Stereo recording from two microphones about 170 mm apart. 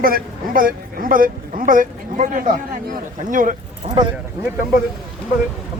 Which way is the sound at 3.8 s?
40° right (ahead or behind).